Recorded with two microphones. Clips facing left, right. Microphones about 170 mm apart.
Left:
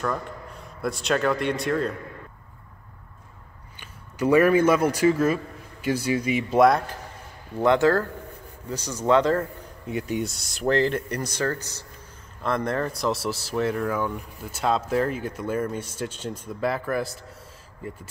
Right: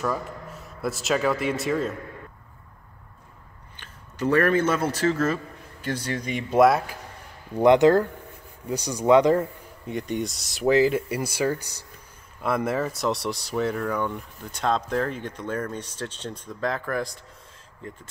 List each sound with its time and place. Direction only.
0.0 s a man's voice: 5° right (ahead or behind)
3.8 s a man's voice: 10° left (ahead or behind)
7.5 s speech: 15° right (ahead or behind)
9.8 s speech: 5° left (ahead or behind)